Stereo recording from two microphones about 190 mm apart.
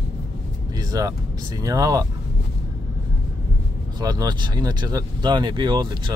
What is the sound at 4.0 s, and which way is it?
Speech, 20° right (ahead or behind).